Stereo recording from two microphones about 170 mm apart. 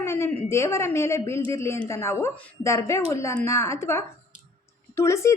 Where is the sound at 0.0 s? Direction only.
15° left (ahead or behind).